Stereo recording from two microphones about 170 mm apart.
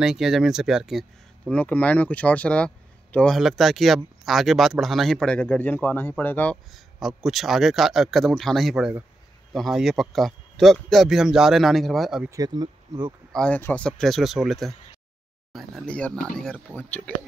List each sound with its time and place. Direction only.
0.0 s speech: 5° right (ahead or behind)
12.3 s speech: 20° right (ahead or behind)
13.3 s speech: 5° left (ahead or behind)